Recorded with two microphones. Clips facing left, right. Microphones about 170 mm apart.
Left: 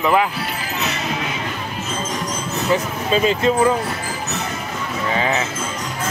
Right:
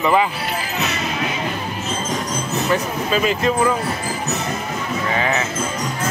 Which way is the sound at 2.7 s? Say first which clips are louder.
Left 2 dB; 30° left (ahead or behind).